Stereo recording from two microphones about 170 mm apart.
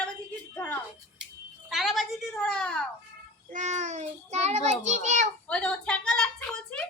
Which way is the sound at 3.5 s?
45° right (ahead or behind).